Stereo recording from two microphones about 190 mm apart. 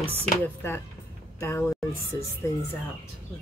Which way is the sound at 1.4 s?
15° left (ahead or behind).